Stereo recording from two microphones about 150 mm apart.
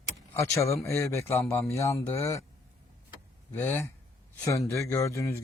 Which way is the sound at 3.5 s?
15° left (ahead or behind).